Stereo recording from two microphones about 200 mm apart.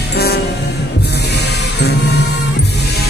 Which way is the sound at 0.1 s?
50° left (ahead or behind).